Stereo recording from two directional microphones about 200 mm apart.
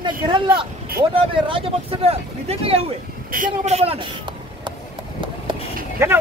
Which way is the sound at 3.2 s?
40° right (ahead or behind).